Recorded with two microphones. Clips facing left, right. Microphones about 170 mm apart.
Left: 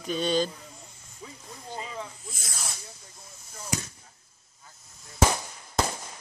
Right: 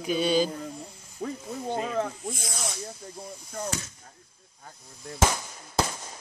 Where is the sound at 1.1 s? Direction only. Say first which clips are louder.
Right 12 dB; 65° right (ahead or behind).